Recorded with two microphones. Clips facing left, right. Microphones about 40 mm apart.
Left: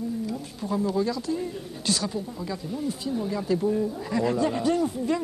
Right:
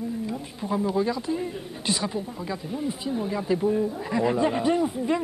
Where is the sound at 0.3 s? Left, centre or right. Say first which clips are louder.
Right 1 dB; right.